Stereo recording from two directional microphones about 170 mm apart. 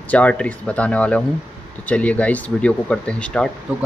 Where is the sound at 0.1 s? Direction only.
10° left (ahead or behind).